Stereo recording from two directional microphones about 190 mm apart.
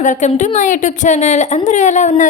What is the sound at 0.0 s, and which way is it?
A woman's voice, 40° left (ahead or behind).